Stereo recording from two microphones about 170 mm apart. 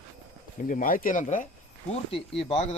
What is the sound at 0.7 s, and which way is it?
Speech, 55° left (ahead or behind).